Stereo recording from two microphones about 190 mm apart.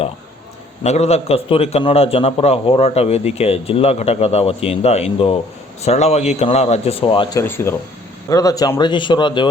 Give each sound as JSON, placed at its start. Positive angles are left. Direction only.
{"t": 0.9, "sound": "a man's voice", "side_deg": 35}
{"t": 7.3, "sound": "a man's voice", "side_deg": 10}